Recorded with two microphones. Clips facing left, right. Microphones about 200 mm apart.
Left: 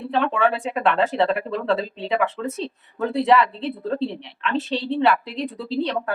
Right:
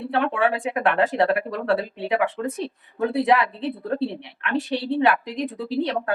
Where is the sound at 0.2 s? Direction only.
15° right (ahead or behind).